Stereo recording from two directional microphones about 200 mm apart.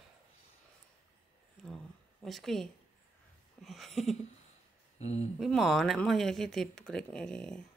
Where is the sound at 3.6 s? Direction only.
Centre (ahead or behind).